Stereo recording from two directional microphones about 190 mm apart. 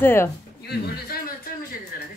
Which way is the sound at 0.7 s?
50° left (ahead or behind).